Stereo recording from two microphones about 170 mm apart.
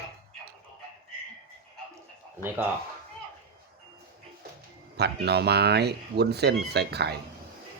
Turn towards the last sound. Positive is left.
turn(degrees=-75)  # may be behind; listen again after turning